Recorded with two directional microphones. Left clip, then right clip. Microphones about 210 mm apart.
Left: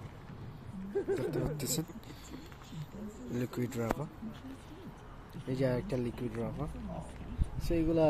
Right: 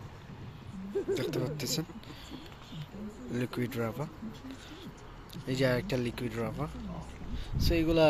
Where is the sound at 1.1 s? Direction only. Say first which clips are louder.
Right 2 dB; centre (ahead or behind).